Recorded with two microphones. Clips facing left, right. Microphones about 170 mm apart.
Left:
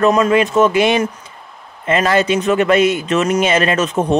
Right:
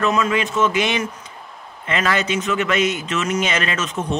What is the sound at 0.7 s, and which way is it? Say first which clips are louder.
A man's voice: left 7 dB; 50° left (ahead or behind).